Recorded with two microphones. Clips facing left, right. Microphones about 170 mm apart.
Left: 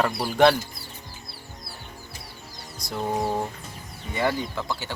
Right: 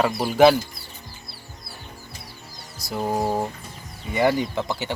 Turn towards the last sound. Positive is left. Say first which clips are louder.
# right 4 dB
turn(degrees=-20)  # may be behind; listen again after turning